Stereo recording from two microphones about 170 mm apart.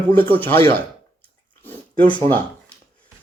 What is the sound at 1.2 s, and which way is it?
Dog, 10° left (ahead or behind).